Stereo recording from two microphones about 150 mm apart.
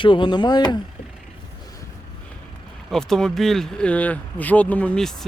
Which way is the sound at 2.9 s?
5° left (ahead or behind).